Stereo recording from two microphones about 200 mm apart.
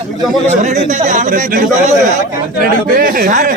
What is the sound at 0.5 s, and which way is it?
Speech, 35° right (ahead or behind).